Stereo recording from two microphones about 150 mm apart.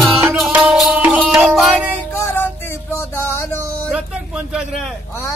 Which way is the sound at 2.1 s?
15° left (ahead or behind).